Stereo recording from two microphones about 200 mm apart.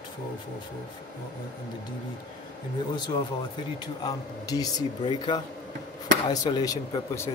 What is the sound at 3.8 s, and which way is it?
Speech, 20° left (ahead or behind).